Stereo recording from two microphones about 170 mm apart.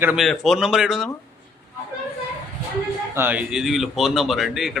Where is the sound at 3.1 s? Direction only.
10° right (ahead or behind).